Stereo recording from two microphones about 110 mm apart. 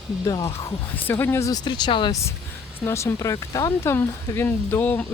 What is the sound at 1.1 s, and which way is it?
Speech, 20° left (ahead or behind).